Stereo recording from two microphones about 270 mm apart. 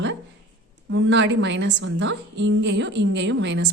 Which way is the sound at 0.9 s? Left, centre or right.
Right.